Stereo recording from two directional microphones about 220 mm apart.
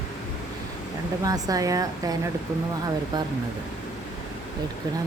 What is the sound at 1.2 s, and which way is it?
Speech, 15° right (ahead or behind).